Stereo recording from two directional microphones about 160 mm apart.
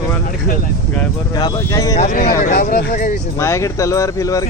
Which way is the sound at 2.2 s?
60° left (ahead or behind).